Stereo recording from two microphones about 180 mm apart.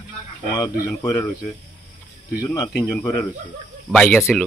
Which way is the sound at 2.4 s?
20° left (ahead or behind).